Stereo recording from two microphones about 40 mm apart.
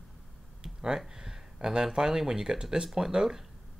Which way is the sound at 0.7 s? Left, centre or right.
Centre.